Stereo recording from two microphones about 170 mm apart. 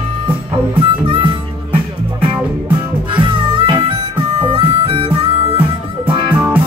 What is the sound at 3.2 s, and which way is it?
Music, 30° right (ahead or behind).